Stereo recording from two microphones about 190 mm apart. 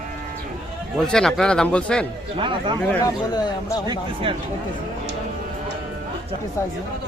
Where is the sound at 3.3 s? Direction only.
20° left (ahead or behind).